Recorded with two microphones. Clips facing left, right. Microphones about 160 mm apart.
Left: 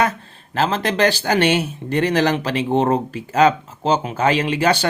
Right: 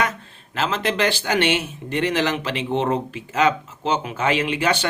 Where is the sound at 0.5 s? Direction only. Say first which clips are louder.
Left 3 dB; 40° left (ahead or behind).